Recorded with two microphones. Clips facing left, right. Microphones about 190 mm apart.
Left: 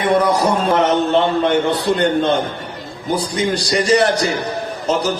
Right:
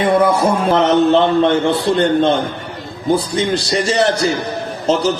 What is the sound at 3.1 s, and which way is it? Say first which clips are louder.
A man's voice: right 3 dB; 25° right (ahead or behind).